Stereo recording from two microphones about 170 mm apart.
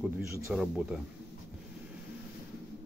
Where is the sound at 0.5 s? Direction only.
5° right (ahead or behind).